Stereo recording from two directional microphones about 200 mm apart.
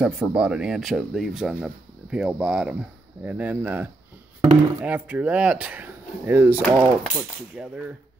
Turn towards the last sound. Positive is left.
turn(degrees=-5)  # may be behind; listen again after turning